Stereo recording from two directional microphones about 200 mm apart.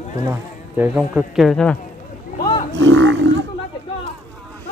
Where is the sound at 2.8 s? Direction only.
65° right (ahead or behind).